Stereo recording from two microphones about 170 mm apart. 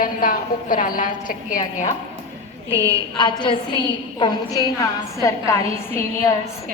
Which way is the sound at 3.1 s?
30° left (ahead or behind).